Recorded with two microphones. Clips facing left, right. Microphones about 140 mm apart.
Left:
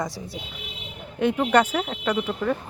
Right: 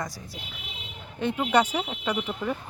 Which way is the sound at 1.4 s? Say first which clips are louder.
Left 2 dB; 10° right (ahead or behind).